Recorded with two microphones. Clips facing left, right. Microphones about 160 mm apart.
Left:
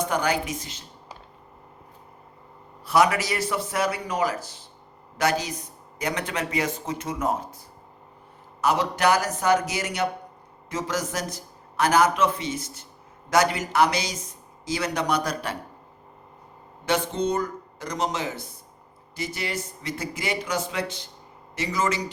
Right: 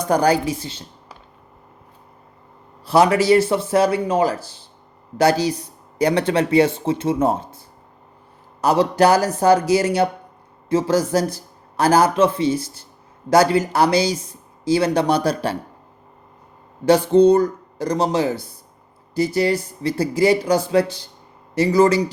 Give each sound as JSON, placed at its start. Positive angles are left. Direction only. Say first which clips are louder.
{"t": 0.0, "sound": "speech", "louder": "right 8 dB", "side_deg": -35}
{"t": 2.8, "sound": "speech", "louder": "right 6 dB", "side_deg": -30}
{"t": 8.6, "sound": "speech", "louder": "right 7 dB", "side_deg": -30}
{"t": 16.8, "sound": "speech", "louder": "right 12 dB", "side_deg": -35}